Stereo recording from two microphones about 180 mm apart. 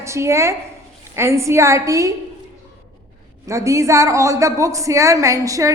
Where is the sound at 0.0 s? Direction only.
15° right (ahead or behind).